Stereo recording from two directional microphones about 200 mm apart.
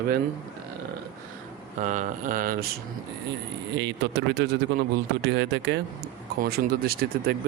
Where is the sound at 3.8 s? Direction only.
60° right (ahead or behind).